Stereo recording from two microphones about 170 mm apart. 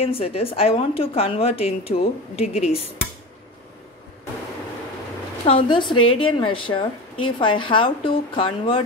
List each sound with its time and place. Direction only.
0.0 s a woman's voice: 35° left (ahead or behind)
5.4 s a woman's voice: 30° left (ahead or behind)